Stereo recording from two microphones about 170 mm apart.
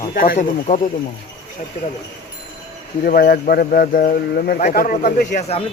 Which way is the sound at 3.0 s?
60° left (ahead or behind).